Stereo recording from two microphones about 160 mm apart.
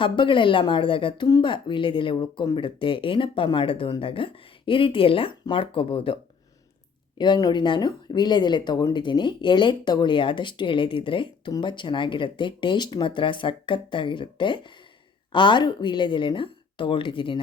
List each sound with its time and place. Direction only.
0.0 s speech: 30° left (ahead or behind)
7.2 s speech: 25° left (ahead or behind)